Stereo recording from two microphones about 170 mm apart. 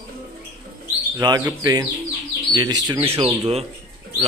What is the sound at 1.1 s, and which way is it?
Speech, 20° right (ahead or behind).